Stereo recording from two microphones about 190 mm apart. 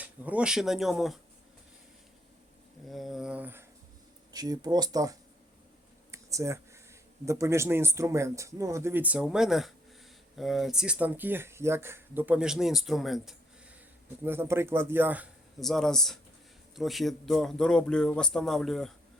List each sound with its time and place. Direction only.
0.0 s speech: 10° right (ahead or behind)
2.9 s a sound: centre (ahead or behind)
4.3 s speech: 20° right (ahead or behind)
6.1 s computer keyboard: 15° right (ahead or behind)
7.3 s speech: 15° right (ahead or behind)
14.3 s speech: 10° right (ahead or behind)